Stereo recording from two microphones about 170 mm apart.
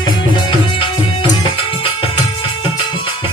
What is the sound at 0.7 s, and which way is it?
Music, 30° left (ahead or behind).